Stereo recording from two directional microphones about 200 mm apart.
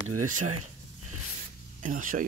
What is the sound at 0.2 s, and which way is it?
Speech, 90° right.